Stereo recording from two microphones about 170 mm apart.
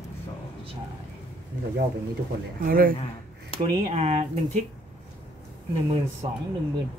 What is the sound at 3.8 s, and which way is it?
Speech, 40° right (ahead or behind).